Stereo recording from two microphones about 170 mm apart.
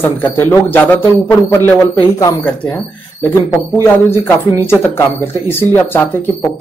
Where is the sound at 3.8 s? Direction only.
15° left (ahead or behind).